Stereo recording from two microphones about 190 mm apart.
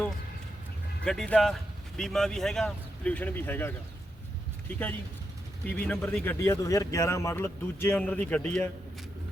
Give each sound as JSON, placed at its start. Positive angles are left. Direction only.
{"t": 1.0, "sound": "speech", "side_deg": 5}
{"t": 5.6, "sound": "a man's voice", "side_deg": 5}